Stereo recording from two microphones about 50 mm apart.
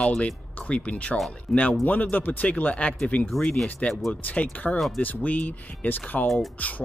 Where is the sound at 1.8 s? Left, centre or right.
Left.